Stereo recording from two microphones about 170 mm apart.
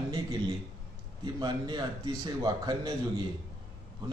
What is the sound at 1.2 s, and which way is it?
A man's voice, 25° right (ahead or behind).